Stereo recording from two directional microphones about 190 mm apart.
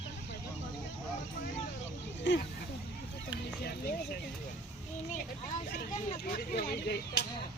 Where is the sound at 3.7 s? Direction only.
55° left (ahead or behind).